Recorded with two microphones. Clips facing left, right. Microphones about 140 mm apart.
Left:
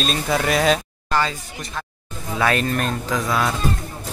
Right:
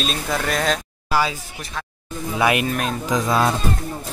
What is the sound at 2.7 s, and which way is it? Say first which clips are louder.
Speech: left 1 dB; 5° right (ahead or behind).